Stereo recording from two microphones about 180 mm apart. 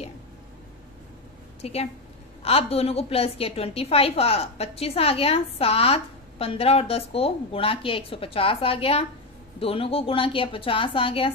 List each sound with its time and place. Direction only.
1.6 s a woman's voice: 35° left (ahead or behind)